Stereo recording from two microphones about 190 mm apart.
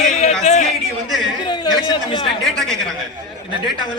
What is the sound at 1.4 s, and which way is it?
Speech, 20° left (ahead or behind).